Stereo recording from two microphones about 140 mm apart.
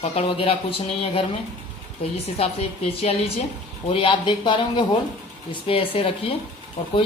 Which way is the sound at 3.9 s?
35° left (ahead or behind).